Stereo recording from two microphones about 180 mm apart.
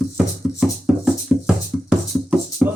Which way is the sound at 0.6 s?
5° right (ahead or behind).